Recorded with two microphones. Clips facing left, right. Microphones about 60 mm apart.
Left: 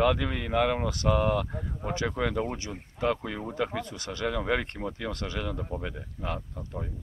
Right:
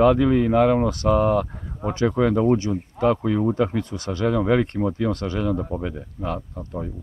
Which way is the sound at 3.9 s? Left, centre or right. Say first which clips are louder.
Right 8 dB; right.